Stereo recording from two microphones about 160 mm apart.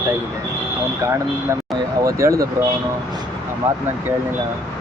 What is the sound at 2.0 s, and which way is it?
Speech, 20° right (ahead or behind).